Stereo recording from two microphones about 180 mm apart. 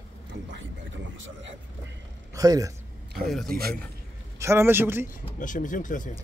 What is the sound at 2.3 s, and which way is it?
Speech, 20° right (ahead or behind).